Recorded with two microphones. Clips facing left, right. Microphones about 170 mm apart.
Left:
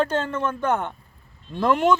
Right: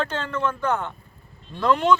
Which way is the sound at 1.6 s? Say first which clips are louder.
Even; 45° left (ahead or behind).